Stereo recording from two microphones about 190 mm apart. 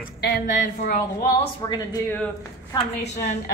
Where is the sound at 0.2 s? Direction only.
50° left (ahead or behind).